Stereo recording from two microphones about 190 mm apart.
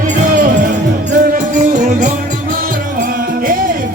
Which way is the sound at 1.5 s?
40° right (ahead or behind).